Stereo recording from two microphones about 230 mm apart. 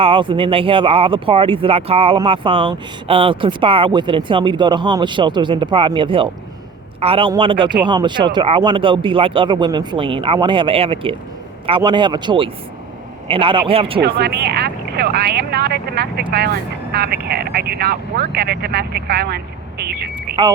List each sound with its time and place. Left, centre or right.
0.0 s speech: right
14.0 s speech: right